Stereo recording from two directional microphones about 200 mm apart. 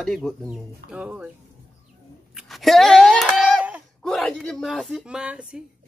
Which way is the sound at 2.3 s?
Centre (ahead or behind).